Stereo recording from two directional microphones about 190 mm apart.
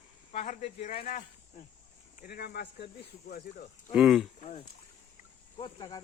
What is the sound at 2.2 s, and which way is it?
Speech, 55° left (ahead or behind).